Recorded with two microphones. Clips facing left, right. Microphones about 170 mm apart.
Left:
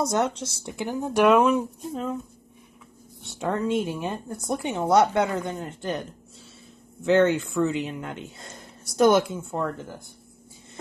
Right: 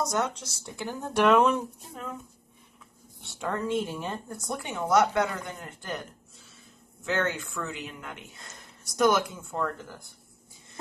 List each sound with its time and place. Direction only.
0.1 s speech: 25° left (ahead or behind); by 1.6 s 5° left (ahead or behind)
3.3 s speech: 20° left (ahead or behind)
7.1 s speech: 25° left (ahead or behind)